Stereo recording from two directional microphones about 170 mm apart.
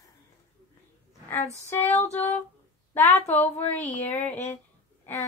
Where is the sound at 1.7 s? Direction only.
10° left (ahead or behind).